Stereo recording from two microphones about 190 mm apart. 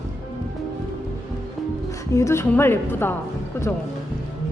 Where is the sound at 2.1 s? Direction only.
15° left (ahead or behind).